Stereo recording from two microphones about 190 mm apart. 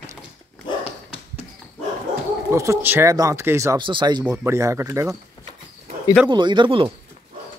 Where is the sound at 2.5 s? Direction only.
15° right (ahead or behind).